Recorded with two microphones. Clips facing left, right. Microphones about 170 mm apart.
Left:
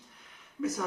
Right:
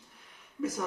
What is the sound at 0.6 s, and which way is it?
Speech, 5° right (ahead or behind).